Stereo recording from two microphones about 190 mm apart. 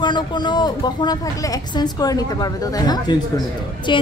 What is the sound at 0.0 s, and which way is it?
A woman's voice, 25° left (ahead or behind).